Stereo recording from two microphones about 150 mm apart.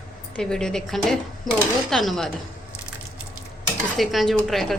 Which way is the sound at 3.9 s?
Centre (ahead or behind).